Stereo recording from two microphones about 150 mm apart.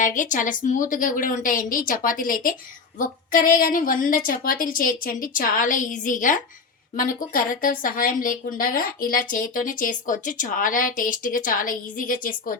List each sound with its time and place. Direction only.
0.0 s a woman's voice: 60° left (ahead or behind)